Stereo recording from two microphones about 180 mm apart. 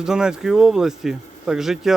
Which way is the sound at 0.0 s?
5° right (ahead or behind).